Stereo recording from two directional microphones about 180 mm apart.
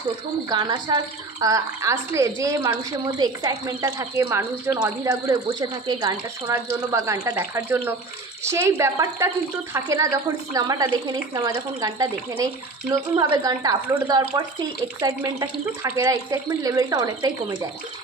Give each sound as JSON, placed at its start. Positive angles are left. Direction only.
{"t": 0.5, "sound": "a woman's voice", "side_deg": -25}